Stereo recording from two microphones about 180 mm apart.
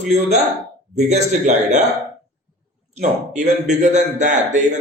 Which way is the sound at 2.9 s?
45° right (ahead or behind).